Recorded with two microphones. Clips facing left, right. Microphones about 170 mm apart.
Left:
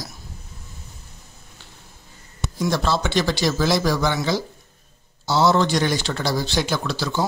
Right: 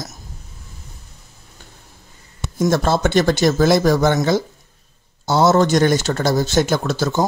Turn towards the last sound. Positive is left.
turn(degrees=-50)  # may be behind; listen again after turning